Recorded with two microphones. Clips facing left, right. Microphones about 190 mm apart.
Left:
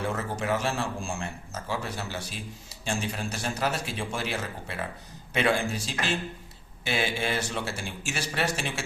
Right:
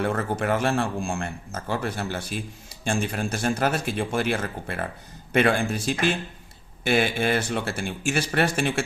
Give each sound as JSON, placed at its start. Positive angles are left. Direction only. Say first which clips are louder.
{"t": 0.0, "sound": "a man's voice", "louder": "right 5 dB", "side_deg": -55}